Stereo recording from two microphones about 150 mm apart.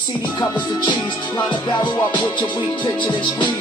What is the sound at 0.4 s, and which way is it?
Music, 30° left (ahead or behind).